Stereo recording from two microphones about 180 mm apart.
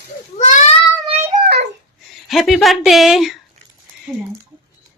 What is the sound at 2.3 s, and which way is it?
Speech, centre (ahead or behind).